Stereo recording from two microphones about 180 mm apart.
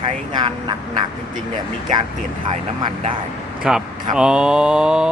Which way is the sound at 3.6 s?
5° right (ahead or behind).